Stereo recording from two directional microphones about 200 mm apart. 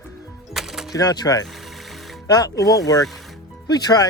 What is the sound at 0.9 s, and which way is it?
Speech, 20° left (ahead or behind).